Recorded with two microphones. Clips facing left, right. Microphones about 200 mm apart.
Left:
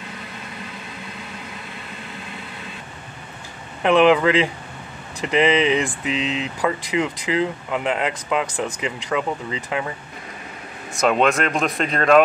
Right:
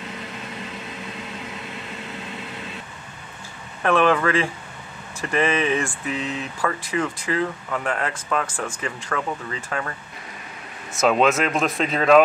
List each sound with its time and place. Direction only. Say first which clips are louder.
3.8 s speech: left 4 dB; 15° left (ahead or behind)
10.9 s speech: even; centre (ahead or behind)